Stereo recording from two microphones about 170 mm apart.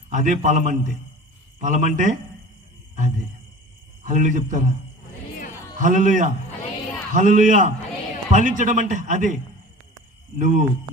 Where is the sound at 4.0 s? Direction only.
45° right (ahead or behind).